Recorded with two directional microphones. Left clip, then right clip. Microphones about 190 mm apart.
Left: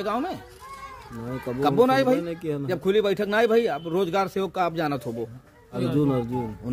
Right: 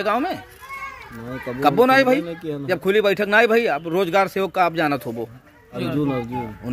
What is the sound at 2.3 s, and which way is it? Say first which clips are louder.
Speech: right 1 dB; 35° left (ahead or behind).